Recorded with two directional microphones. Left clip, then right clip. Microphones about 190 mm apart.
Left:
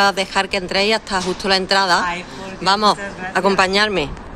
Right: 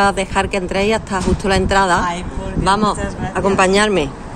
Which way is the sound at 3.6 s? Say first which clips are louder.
Right 3 dB; 5° right (ahead or behind).